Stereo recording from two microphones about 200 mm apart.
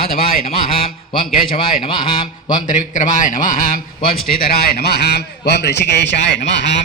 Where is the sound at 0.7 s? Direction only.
25° left (ahead or behind).